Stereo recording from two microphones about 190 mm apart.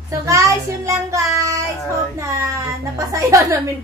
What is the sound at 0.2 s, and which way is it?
Child singing, 15° right (ahead or behind).